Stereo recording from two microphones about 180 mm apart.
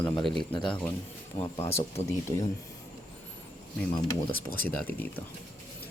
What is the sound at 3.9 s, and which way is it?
Speech, 25° left (ahead or behind).